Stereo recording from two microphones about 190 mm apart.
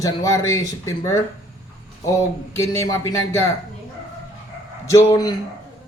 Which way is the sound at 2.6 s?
15° left (ahead or behind).